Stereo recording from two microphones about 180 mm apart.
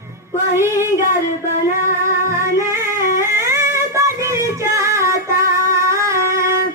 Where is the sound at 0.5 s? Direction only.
15° right (ahead or behind).